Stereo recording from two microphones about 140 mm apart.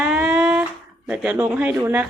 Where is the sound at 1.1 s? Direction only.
10° right (ahead or behind).